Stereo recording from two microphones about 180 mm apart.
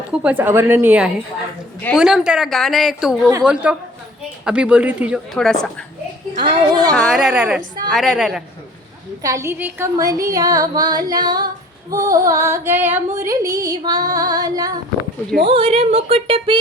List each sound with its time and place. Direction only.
0.1 s a woman's voice: 10° right (ahead or behind)
6.4 s female singing: 25° right (ahead or behind)
6.9 s speech: 5° left (ahead or behind)
9.2 s female singing: 15° right (ahead or behind)
15.4 s speech: 30° right (ahead or behind)